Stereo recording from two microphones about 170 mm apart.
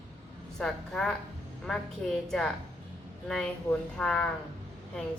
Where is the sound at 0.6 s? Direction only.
5° left (ahead or behind).